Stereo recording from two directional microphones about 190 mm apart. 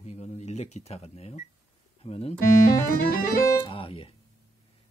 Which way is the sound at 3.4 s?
25° left (ahead or behind).